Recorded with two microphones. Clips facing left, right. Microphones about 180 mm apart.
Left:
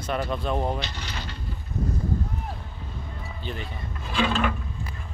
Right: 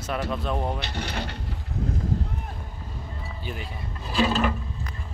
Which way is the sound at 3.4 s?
5° right (ahead or behind).